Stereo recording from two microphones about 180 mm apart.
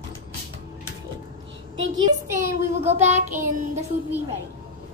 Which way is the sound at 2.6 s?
40° right (ahead or behind).